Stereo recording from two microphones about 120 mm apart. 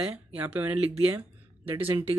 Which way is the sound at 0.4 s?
15° right (ahead or behind).